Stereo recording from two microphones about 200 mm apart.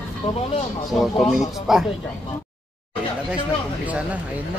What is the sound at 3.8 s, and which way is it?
Speech, 5° right (ahead or behind).